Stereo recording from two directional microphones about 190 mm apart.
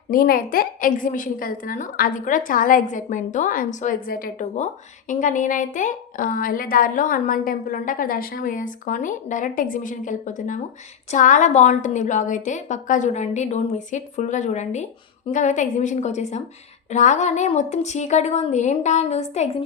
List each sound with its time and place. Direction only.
0.1 s a woman's voice: 50° left (ahead or behind)